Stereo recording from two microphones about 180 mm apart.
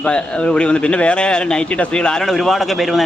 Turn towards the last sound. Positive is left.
turn(degrees=0)  # may be behind; listen again after turning